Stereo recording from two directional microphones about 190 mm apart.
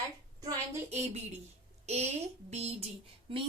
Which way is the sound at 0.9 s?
35° right (ahead or behind).